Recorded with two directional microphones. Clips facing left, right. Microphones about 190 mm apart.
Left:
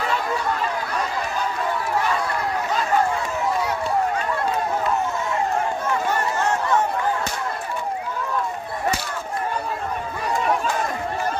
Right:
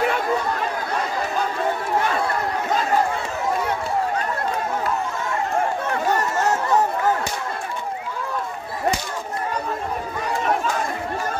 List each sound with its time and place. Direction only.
6.0 s chatter: 40° right (ahead or behind)